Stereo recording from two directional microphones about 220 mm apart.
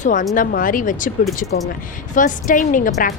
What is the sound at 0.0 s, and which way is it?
A woman's voice, 35° left (ahead or behind).